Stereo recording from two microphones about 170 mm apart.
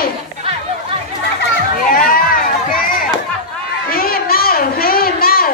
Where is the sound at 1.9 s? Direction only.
55° left (ahead or behind).